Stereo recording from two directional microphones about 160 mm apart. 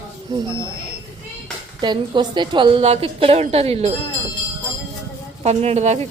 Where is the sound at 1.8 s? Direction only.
30° right (ahead or behind).